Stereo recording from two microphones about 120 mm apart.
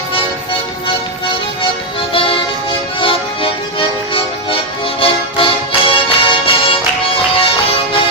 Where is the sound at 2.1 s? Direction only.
50° left (ahead or behind).